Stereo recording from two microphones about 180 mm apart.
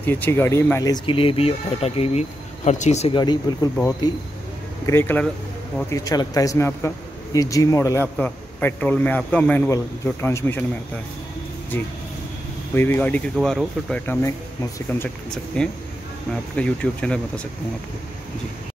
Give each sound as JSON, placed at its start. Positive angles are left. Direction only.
{"t": 0.0, "sound": "speech", "side_deg": 10}
{"t": 3.2, "sound": "speech", "side_deg": 25}
{"t": 4.8, "sound": "a man's voice", "side_deg": 15}
{"t": 12.7, "sound": "a man's voice", "side_deg": 10}